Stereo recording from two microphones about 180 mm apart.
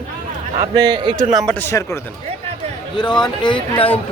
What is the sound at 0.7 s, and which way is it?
Speech, 25° right (ahead or behind).